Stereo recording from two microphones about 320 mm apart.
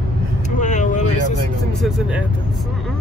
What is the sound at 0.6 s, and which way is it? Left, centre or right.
Vehicle, left.